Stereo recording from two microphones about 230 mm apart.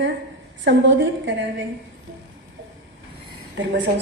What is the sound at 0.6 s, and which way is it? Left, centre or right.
Speech, right.